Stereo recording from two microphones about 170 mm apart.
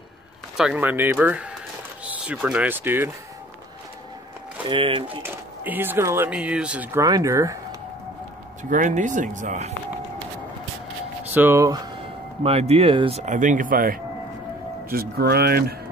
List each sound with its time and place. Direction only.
0.6 s speech: 5° right (ahead or behind)
4.6 s speech: 30° right (ahead or behind)
5.2 s speech: 10° right (ahead or behind)
8.6 s speech: 50° right (ahead or behind)
11.3 s speech: 15° right (ahead or behind)
12.4 s speech: 35° right (ahead or behind)
13.2 s speech: 50° right (ahead or behind); by 15.6 s 65° right (ahead or behind)